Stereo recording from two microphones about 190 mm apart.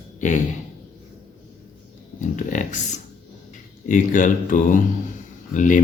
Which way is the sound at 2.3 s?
40° left (ahead or behind).